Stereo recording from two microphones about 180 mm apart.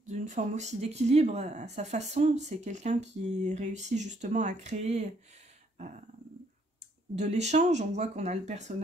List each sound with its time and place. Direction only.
0.0 s speech: 40° right (ahead or behind)
7.2 s speech: 40° right (ahead or behind)